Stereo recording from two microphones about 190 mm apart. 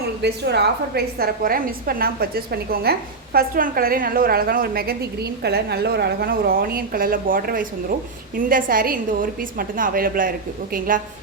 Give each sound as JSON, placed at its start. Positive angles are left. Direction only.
{"t": 0.2, "sound": "a woman's voice", "side_deg": -65}